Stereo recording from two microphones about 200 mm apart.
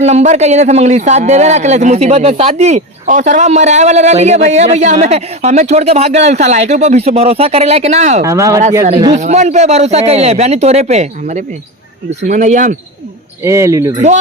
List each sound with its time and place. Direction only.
0.0 s speech: 35° right (ahead or behind)
8.2 s speech: 15° right (ahead or behind)
9.1 s speech: 35° right (ahead or behind)
13.4 s speech: 15° right (ahead or behind)